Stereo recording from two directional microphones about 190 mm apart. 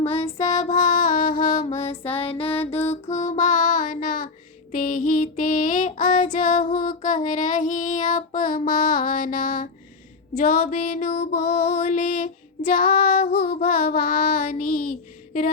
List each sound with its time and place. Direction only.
0.0 s music: 30° left (ahead or behind)
4.7 s child singing: 45° left (ahead or behind)